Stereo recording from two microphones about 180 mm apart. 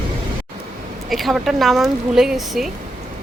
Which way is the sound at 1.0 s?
Centre (ahead or behind).